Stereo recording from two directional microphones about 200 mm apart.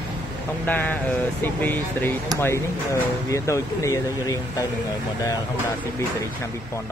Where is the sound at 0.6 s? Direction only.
10° left (ahead or behind).